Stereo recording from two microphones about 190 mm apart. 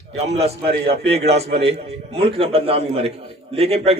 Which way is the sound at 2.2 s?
30° right (ahead or behind).